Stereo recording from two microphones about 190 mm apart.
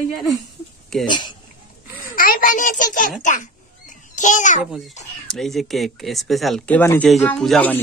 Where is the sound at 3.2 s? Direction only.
40° left (ahead or behind).